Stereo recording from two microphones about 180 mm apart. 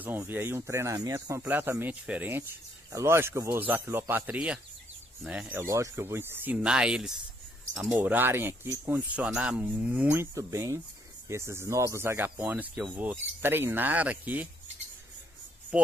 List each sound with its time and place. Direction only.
0.0 s speech: 10° right (ahead or behind)
10.3 s speech: 15° right (ahead or behind)
15.7 s speech: 5° right (ahead or behind)